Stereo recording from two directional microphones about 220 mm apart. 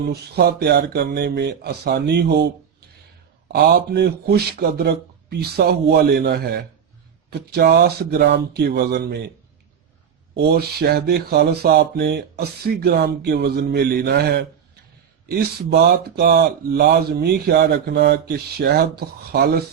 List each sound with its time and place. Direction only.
0.0 s speech: 45° right (ahead or behind)
3.5 s speech: 50° right (ahead or behind)
10.3 s speech: 45° right (ahead or behind)